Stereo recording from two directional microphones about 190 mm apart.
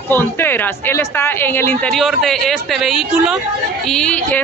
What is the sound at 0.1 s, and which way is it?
Speech, 10° left (ahead or behind).